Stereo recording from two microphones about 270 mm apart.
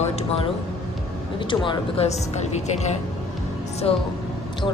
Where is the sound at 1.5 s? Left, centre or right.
Centre.